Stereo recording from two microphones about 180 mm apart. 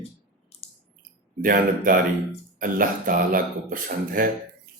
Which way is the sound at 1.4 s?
50° right (ahead or behind).